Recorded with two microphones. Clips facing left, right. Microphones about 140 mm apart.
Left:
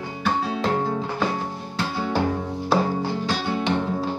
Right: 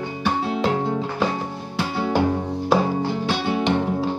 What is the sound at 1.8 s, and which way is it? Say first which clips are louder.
Music: right 3 dB; 15° right (ahead or behind).